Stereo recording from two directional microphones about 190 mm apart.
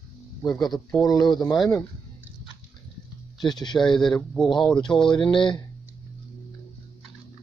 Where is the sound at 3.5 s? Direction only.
25° left (ahead or behind).